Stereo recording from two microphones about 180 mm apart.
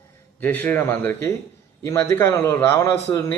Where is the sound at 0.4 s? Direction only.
10° left (ahead or behind).